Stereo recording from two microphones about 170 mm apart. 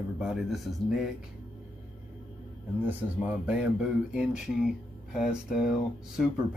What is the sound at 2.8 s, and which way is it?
Speech, 10° right (ahead or behind).